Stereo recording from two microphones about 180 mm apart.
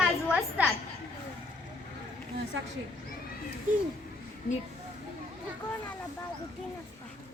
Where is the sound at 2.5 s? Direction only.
90° right.